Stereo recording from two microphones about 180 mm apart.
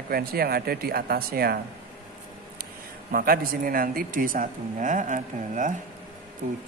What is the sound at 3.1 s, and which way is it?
Speech, 55° right (ahead or behind).